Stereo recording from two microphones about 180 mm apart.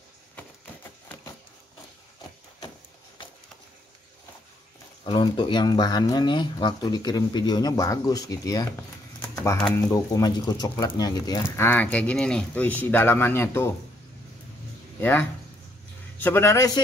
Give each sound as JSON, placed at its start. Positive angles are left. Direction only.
{"t": 5.0, "sound": "speech", "side_deg": 25}
{"t": 9.3, "sound": "typing", "side_deg": 15}
{"t": 9.8, "sound": "speech", "side_deg": 15}
{"t": 15.0, "sound": "speech", "side_deg": 10}